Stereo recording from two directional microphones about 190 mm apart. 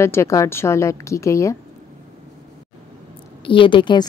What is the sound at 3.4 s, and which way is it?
Speech, 25° left (ahead or behind).